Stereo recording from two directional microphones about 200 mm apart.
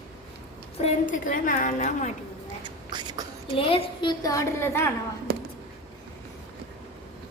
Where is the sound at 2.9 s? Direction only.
20° right (ahead or behind).